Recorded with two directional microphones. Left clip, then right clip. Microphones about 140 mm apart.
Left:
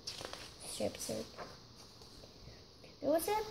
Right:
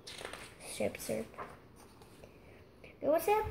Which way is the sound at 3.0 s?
15° right (ahead or behind).